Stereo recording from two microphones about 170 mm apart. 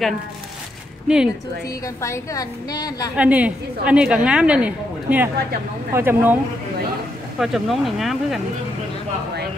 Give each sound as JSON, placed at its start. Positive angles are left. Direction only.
{"t": 1.0, "sound": "a woman's voice", "side_deg": -5}
{"t": 2.0, "sound": "a woman's voice", "side_deg": 20}
{"t": 3.2, "sound": "a woman's voice", "side_deg": -10}
{"t": 7.3, "sound": "speech", "side_deg": 0}